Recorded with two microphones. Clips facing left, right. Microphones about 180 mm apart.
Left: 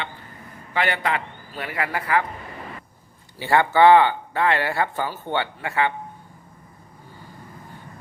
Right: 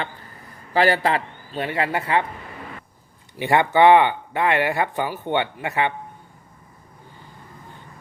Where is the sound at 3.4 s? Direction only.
20° right (ahead or behind).